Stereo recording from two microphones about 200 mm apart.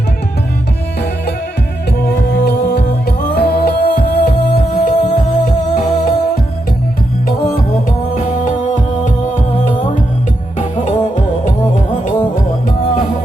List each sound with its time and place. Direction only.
2.3 s music: 55° left (ahead or behind)
7.3 s music: 45° left (ahead or behind)
10.6 s music: 35° left (ahead or behind)